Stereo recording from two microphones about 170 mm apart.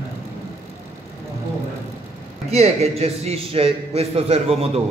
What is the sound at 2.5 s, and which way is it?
A man's voice, 40° right (ahead or behind).